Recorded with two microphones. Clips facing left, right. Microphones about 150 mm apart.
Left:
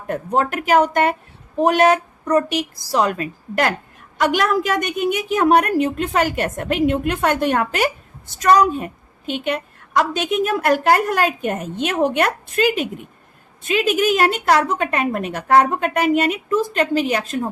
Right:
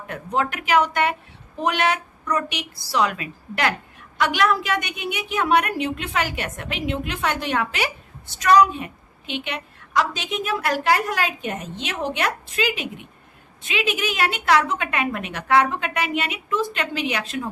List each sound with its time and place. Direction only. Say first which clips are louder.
0.1 s a woman's voice: left 5 dB; 45° left (ahead or behind)